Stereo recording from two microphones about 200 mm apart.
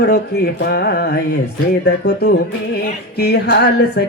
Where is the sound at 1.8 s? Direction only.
55° left (ahead or behind).